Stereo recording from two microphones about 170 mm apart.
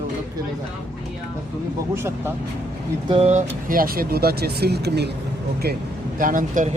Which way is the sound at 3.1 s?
40° right (ahead or behind).